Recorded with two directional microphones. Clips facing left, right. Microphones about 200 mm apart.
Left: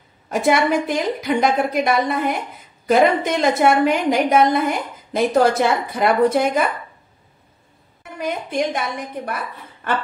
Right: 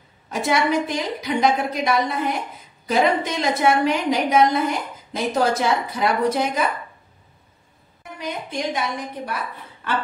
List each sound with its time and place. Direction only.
0.3 s a woman's voice: 55° left (ahead or behind)
8.2 s a woman's voice: 55° left (ahead or behind)
9.8 s a sound: 50° left (ahead or behind)